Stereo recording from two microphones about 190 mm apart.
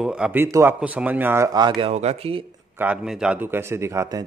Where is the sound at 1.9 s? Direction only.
35° right (ahead or behind).